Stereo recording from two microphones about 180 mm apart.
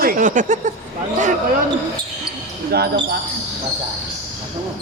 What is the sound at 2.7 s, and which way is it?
Speech, 60° right (ahead or behind).